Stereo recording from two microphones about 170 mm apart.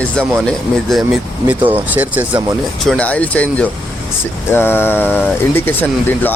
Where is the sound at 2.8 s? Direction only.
5° left (ahead or behind).